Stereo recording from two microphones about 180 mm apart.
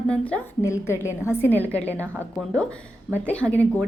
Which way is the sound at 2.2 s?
5° left (ahead or behind).